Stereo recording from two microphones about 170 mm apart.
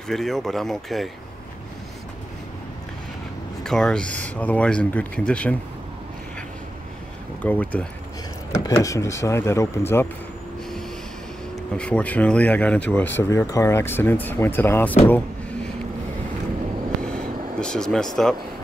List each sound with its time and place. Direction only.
0.1 s speech: centre (ahead or behind)
3.6 s speech: 5° left (ahead or behind)
7.4 s speech: 10° left (ahead or behind)
11.7 s speech: 5° left (ahead or behind)
17.0 s vehicle: 5° left (ahead or behind)